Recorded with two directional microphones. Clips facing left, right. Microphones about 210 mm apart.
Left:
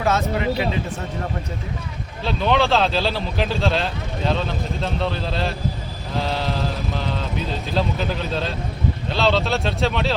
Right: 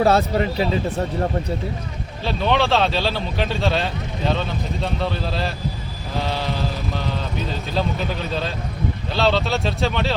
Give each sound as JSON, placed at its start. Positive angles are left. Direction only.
{"t": 0.0, "sound": "speech", "side_deg": -35}
{"t": 2.2, "sound": "speech", "side_deg": 0}